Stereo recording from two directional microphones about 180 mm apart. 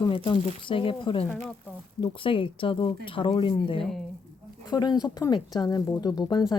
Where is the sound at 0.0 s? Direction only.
25° left (ahead or behind).